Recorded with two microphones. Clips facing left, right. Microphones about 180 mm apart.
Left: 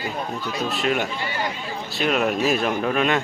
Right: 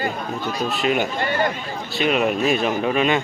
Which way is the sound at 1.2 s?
55° right (ahead or behind).